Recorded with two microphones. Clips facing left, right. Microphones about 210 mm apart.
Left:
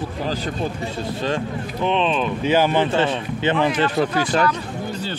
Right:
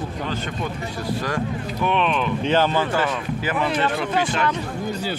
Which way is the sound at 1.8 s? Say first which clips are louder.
Left 2 dB; 20° left (ahead or behind).